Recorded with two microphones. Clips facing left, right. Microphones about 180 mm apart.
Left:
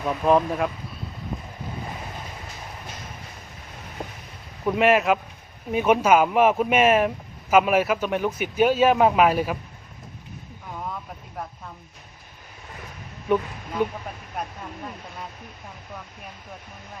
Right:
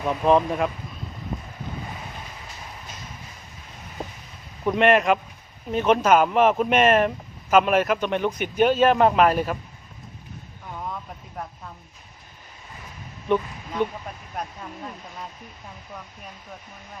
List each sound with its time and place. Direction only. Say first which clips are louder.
0.0 s speech: right 1 dB; centre (ahead or behind)
4.6 s speech: right 1 dB; 5° left (ahead or behind)
13.2 s speech: even; 5° left (ahead or behind)